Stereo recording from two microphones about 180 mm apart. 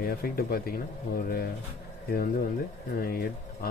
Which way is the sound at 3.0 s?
55° left (ahead or behind).